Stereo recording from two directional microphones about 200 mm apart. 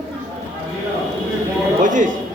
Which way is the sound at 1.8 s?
40° right (ahead or behind).